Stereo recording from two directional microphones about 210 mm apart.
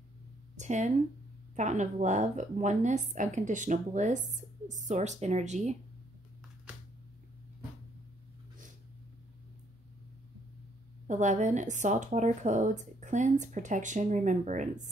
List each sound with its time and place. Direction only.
0.6 s a woman's voice: 35° right (ahead or behind)
11.1 s a woman's voice: 35° right (ahead or behind)